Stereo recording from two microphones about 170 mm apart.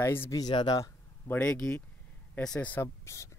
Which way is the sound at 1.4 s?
5° left (ahead or behind).